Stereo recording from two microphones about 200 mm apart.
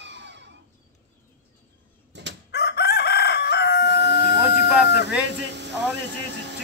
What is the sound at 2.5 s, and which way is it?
Chicken, 55° left (ahead or behind).